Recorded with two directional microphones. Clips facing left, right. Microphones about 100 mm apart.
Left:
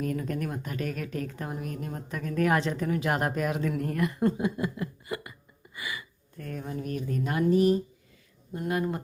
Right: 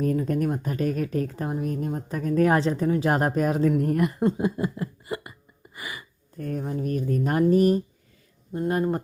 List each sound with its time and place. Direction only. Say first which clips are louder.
0.0 s a woman's voice: right 7 dB; 35° right (ahead or behind)
5.7 s gasp: even; 35° right (ahead or behind)
6.8 s speech: right 6 dB; 40° right (ahead or behind)
8.5 s a woman's voice: right 5 dB; 35° right (ahead or behind)